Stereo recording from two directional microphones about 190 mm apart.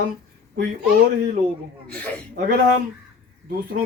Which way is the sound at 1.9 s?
5° left (ahead or behind).